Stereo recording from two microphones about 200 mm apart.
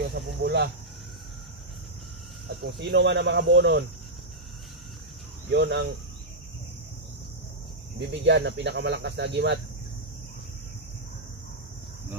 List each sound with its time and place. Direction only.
0.1 s speech: 55° right (ahead or behind)
2.6 s speech: 55° right (ahead or behind)
5.5 s speech: 55° right (ahead or behind)
8.1 s speech: 60° right (ahead or behind)